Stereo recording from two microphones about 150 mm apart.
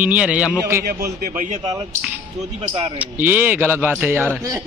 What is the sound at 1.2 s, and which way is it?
Speech, 60° right (ahead or behind).